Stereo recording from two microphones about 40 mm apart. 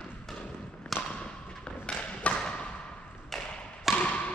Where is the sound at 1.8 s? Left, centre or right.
Left.